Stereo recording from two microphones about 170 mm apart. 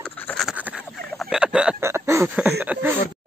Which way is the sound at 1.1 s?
Centre (ahead or behind).